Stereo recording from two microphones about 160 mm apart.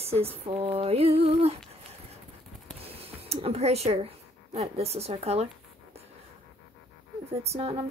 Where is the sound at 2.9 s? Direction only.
40° right (ahead or behind).